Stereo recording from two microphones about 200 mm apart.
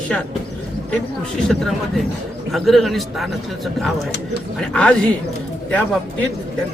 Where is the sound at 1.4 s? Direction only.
Centre (ahead or behind).